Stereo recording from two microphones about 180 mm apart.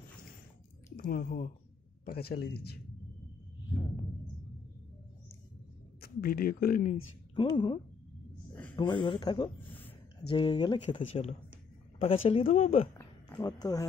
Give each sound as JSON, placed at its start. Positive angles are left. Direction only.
{"t": 0.9, "sound": "speech", "side_deg": 55}
{"t": 5.9, "sound": "speech", "side_deg": 60}
{"t": 7.3, "sound": "speech", "side_deg": 25}
{"t": 12.9, "sound": "a sound", "side_deg": 20}